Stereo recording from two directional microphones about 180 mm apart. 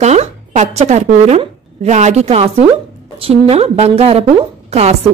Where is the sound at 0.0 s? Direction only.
40° right (ahead or behind).